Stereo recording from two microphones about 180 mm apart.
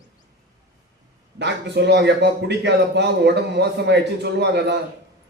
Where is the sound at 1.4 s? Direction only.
70° right (ahead or behind).